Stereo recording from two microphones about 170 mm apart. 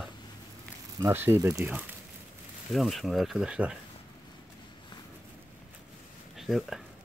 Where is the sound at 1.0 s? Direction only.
15° right (ahead or behind).